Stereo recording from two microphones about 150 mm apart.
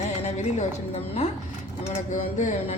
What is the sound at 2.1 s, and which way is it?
Speech, 55° left (ahead or behind).